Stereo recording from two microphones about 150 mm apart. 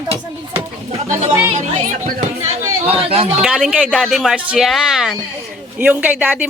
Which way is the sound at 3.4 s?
5° right (ahead or behind).